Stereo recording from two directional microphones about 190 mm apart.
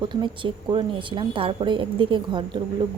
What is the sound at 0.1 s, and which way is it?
A woman's voice, 25° right (ahead or behind).